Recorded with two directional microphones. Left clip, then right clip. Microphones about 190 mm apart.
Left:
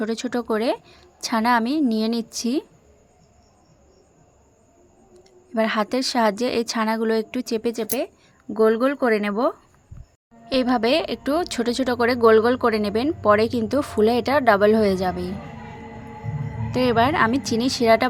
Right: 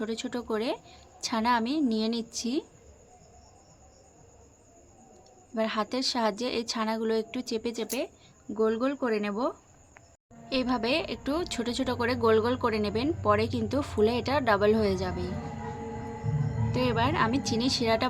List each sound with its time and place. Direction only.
0.0 s a woman's voice: 40° left (ahead or behind)
5.5 s a woman's voice: 45° left (ahead or behind)
16.7 s a woman's voice: 40° left (ahead or behind)